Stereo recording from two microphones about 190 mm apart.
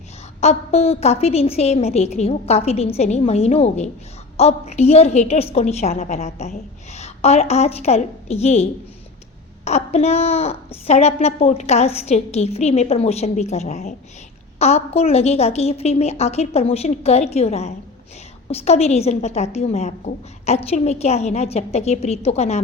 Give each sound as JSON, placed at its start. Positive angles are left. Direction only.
{"t": 0.3, "sound": "a woman's voice", "side_deg": 35}
{"t": 9.6, "sound": "a woman's voice", "side_deg": 35}